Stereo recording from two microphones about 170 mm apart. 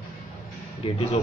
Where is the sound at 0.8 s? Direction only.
30° left (ahead or behind).